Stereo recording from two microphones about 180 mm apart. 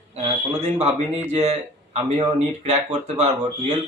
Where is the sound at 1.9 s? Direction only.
35° right (ahead or behind).